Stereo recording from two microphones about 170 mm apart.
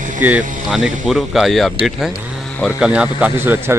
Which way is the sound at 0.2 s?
5° right (ahead or behind).